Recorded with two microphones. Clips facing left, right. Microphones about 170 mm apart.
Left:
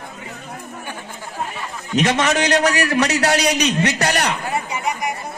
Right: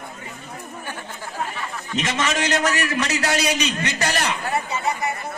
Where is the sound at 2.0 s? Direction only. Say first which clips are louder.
Left 6 dB; 70° left (ahead or behind).